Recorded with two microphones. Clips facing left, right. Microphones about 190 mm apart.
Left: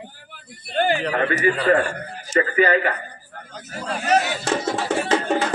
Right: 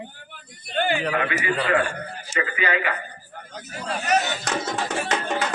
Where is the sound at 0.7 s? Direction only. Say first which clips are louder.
Left 3 dB; 40° left (ahead or behind).